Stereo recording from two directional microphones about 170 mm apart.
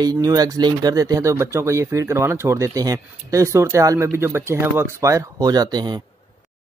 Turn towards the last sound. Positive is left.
turn(degrees=-25)  # may be behind; listen again after turning